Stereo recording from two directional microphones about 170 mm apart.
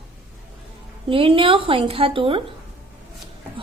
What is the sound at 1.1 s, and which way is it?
A woman's voice, 30° right (ahead or behind).